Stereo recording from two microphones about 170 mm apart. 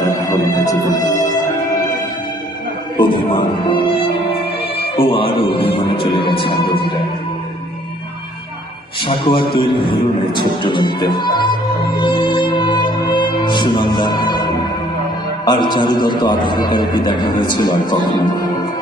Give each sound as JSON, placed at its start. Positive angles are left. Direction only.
{"t": 0.2, "sound": "music", "side_deg": 20}
{"t": 3.0, "sound": "music", "side_deg": 30}
{"t": 9.0, "sound": "a man's voice", "side_deg": 30}
{"t": 11.9, "sound": "music", "side_deg": 25}
{"t": 15.4, "sound": "a man's voice", "side_deg": 25}